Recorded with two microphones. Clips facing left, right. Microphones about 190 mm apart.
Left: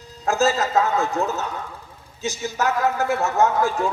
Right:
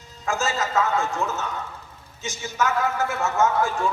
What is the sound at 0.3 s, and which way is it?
A man's voice, 35° left (ahead or behind).